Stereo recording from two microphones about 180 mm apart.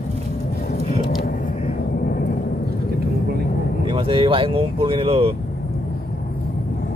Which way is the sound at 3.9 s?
30° right (ahead or behind).